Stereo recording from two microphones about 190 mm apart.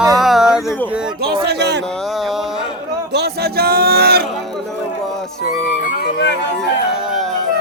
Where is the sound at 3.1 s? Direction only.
60° right (ahead or behind).